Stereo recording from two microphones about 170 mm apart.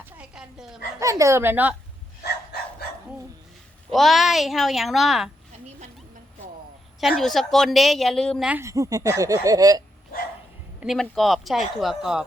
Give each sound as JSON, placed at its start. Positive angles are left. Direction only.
{"t": 0.2, "sound": "bow-wow", "side_deg": -5}
{"t": 0.9, "sound": "a child's voice", "side_deg": -20}
{"t": 3.9, "sound": "a woman's voice", "side_deg": 0}
{"t": 7.0, "sound": "a woman's voice", "side_deg": 0}
{"t": 8.4, "sound": "speech", "side_deg": -15}
{"t": 10.8, "sound": "a woman's voice", "side_deg": 0}